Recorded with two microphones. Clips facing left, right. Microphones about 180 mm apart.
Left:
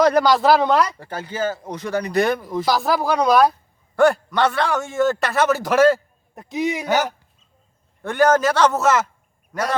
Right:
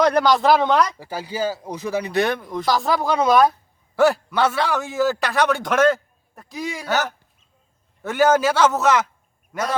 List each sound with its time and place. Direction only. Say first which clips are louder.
0.0 s speech: left 1 dB; 5° left (ahead or behind)
0.9 s speech: even; 10° right (ahead or behind)
6.3 s speech: left 7 dB; 20° left (ahead or behind)
8.0 s a man's voice: left 1 dB; 5° right (ahead or behind)